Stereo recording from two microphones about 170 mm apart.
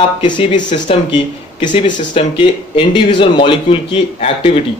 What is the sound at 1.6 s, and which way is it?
A man's voice, 25° left (ahead or behind).